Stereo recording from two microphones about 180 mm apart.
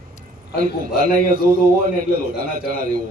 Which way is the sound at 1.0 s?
50° right (ahead or behind).